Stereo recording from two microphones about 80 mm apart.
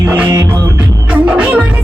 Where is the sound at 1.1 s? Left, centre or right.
Centre.